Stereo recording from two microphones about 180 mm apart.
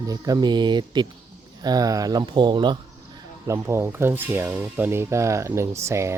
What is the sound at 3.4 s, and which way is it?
Speech, 15° right (ahead or behind).